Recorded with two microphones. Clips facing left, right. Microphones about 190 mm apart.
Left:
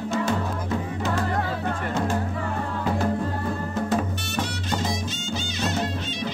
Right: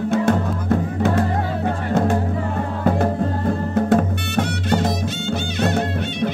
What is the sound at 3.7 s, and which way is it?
Music, 60° right (ahead or behind).